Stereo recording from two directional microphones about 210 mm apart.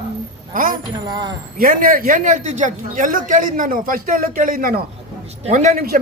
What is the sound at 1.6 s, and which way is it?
Speech, 40° right (ahead or behind).